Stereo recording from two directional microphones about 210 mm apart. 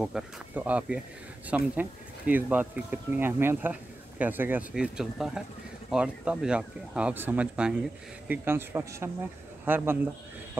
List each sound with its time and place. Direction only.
0.0 s speech: 5° right (ahead or behind)